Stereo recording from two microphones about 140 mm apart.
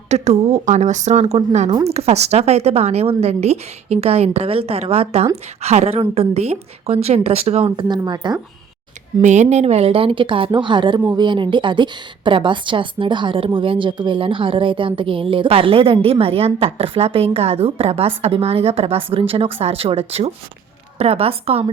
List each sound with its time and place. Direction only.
0.1 s a woman's voice: 50° right (ahead or behind); by 8.4 s 30° right (ahead or behind)
9.2 s a woman's voice: 55° right (ahead or behind)